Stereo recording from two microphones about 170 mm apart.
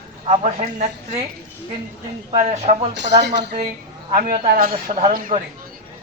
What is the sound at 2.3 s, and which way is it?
Speech, 40° right (ahead or behind).